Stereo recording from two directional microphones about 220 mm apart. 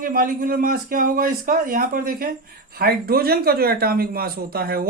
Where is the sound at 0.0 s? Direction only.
40° right (ahead or behind).